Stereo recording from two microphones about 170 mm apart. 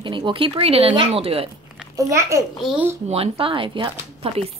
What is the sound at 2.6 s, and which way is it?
Speech, 5° right (ahead or behind).